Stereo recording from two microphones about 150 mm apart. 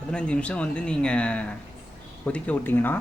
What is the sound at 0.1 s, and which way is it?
Speech, 5° left (ahead or behind).